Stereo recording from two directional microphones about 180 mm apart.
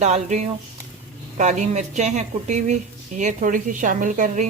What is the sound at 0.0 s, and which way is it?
A woman's voice, 40° right (ahead or behind).